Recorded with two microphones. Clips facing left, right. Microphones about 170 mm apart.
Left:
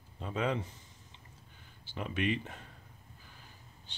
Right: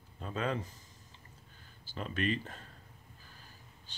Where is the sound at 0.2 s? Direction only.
15° left (ahead or behind).